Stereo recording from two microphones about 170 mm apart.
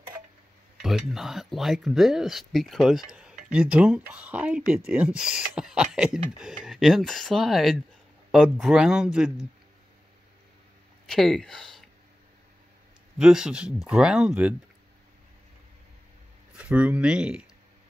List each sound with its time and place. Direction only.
0.8 s speech: centre (ahead or behind)
11.1 s speech: centre (ahead or behind)
13.2 s speech: 5° right (ahead or behind)
16.5 s speech: 10° right (ahead or behind)